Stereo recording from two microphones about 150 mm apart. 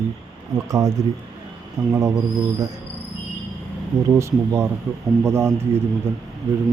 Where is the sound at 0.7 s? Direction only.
20° right (ahead or behind).